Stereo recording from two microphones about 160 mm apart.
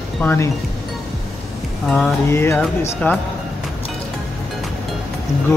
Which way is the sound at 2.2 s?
15° left (ahead or behind).